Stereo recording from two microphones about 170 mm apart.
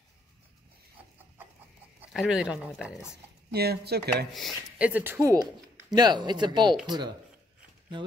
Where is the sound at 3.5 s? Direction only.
70° right (ahead or behind).